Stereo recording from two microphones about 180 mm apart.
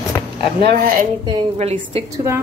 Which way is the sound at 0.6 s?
55° right (ahead or behind).